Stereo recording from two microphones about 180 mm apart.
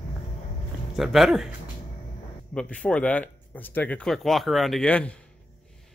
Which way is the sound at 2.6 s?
5° left (ahead or behind).